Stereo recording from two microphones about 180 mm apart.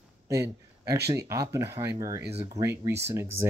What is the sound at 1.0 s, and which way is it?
Speech, 20° right (ahead or behind).